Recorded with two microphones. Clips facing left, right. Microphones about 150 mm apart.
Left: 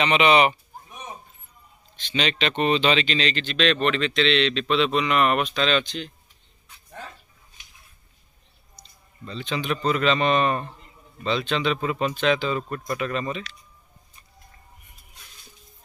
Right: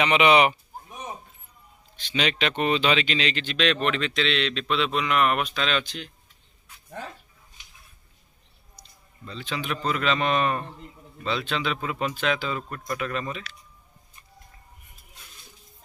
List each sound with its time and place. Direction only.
0.0 s speech: 10° right (ahead or behind)
2.0 s speech: 10° right (ahead or behind)
8.7 s a man's voice: 5° right (ahead or behind)